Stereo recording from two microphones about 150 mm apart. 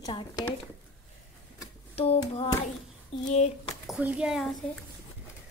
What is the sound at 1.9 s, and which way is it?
Hands, 40° left (ahead or behind).